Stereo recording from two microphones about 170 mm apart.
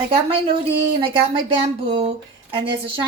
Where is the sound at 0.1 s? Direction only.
30° right (ahead or behind).